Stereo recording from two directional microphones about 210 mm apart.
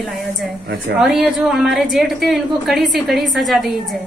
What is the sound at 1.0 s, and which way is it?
A woman's voice, centre (ahead or behind).